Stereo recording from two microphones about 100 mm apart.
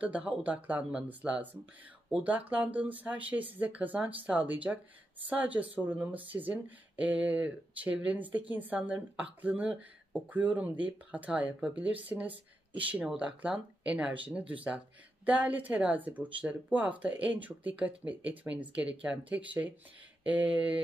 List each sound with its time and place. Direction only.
0.0 s speech: 15° right (ahead or behind)